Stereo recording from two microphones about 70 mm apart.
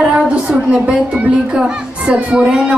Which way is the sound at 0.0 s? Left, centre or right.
Centre.